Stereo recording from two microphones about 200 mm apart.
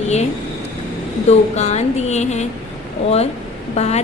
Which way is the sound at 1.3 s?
35° left (ahead or behind).